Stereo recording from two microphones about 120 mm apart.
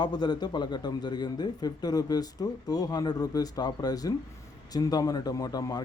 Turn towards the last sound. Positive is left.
turn(degrees=30)  # may be behind; listen again after turning